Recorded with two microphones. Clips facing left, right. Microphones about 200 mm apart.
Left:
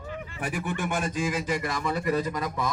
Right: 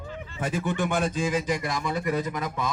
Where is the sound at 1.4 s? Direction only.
15° right (ahead or behind).